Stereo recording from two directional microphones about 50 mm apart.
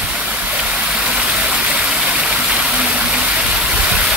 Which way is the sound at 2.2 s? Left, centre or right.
Centre.